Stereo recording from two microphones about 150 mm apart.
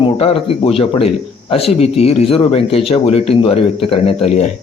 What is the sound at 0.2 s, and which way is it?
A man's voice, 40° left (ahead or behind).